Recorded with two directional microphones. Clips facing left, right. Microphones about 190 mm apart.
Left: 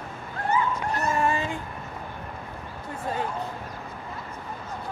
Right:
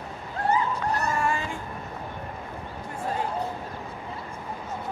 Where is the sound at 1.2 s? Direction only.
20° left (ahead or behind).